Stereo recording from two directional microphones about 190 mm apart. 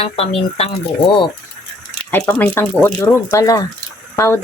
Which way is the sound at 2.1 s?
10° left (ahead or behind).